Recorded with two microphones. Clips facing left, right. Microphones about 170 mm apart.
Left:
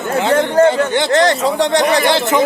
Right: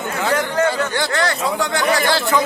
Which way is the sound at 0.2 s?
25° left (ahead or behind).